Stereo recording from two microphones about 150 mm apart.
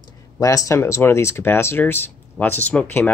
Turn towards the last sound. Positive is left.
turn(degrees=10)  # may be behind; listen again after turning